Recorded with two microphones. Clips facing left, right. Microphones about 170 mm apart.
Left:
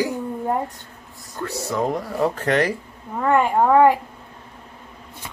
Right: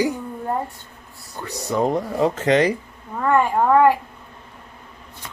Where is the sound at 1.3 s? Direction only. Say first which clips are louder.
Right 1 dB; 15° right (ahead or behind).